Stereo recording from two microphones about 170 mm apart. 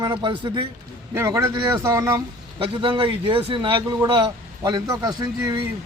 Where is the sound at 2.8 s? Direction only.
30° right (ahead or behind).